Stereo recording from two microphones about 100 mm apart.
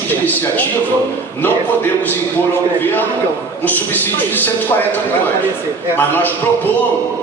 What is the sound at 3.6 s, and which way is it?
Speech, 20° left (ahead or behind).